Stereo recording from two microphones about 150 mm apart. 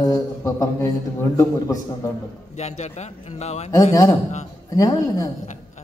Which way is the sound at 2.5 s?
50° left (ahead or behind).